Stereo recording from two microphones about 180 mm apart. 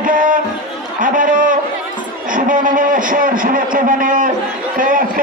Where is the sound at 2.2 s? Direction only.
50° right (ahead or behind).